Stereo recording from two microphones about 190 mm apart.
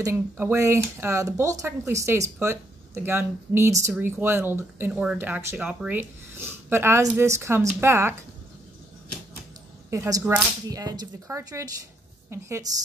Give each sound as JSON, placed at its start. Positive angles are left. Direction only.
{"t": 0.0, "sound": "speech", "side_deg": -15}
{"t": 9.8, "sound": "speech", "side_deg": -15}